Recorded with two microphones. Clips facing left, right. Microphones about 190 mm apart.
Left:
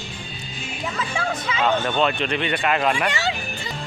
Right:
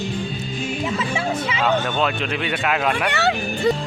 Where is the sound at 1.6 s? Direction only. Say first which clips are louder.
Left 1 dB; centre (ahead or behind).